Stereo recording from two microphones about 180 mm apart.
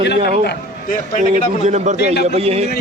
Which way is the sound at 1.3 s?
40° right (ahead or behind).